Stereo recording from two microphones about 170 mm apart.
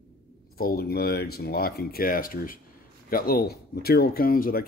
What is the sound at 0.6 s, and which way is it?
Speech, 65° left (ahead or behind).